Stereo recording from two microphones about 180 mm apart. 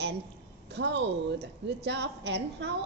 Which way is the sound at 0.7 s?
80° right.